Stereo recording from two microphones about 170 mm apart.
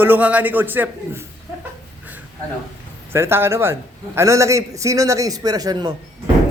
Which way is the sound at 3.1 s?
15° right (ahead or behind).